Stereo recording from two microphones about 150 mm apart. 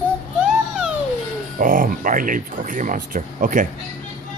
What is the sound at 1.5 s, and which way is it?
Speech, 65° right (ahead or behind).